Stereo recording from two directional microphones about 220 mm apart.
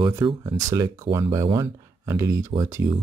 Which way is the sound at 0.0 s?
15° right (ahead or behind).